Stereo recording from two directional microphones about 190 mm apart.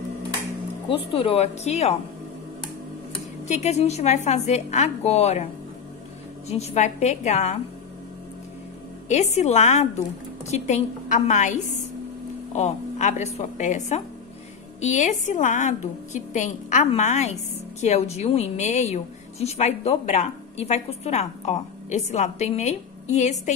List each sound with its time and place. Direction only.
0.8 s a woman's voice: 30° left (ahead or behind)
3.4 s a woman's voice: 35° left (ahead or behind)
6.5 s a woman's voice: 35° left (ahead or behind)
9.1 s a woman's voice: 35° left (ahead or behind)